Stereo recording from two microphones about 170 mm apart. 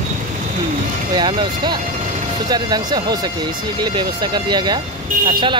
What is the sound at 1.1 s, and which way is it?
Speech, 25° right (ahead or behind).